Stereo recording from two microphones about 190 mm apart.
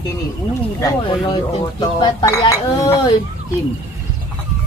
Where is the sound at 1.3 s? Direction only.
25° left (ahead or behind).